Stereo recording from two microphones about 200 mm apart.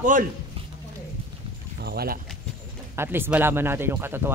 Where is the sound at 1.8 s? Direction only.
55° right (ahead or behind).